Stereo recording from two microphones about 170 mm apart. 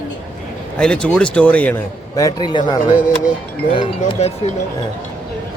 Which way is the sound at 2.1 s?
25° left (ahead or behind).